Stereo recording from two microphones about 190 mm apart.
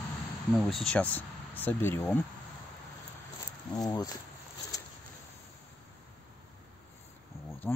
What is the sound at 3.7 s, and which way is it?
Speech, 20° left (ahead or behind).